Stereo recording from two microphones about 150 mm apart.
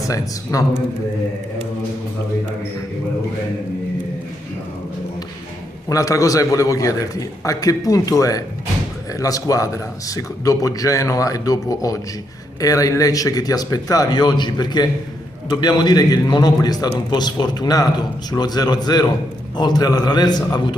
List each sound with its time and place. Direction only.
0.0 s a man's voice: 20° left (ahead or behind)
5.9 s a man's voice: 20° left (ahead or behind)